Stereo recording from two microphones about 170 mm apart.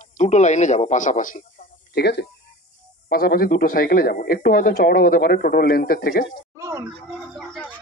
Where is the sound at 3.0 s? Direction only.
60° left (ahead or behind).